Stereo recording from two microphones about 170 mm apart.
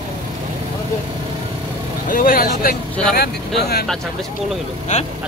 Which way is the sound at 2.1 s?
55° left (ahead or behind).